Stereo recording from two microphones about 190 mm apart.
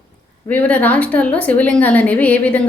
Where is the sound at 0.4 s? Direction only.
10° left (ahead or behind).